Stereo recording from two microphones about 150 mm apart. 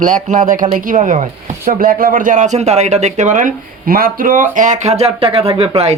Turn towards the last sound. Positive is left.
turn(degrees=-40)  # may be behind; listen again after turning